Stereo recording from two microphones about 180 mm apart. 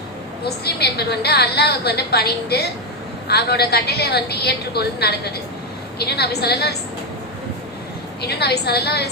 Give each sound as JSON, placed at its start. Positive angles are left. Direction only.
{"t": 0.4, "sound": "a woman's voice", "side_deg": 65}
{"t": 8.2, "sound": "a woman's voice", "side_deg": 65}